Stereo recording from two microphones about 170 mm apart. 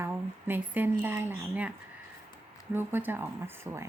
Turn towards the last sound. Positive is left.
turn(degrees=-15)  # may be behind; listen again after turning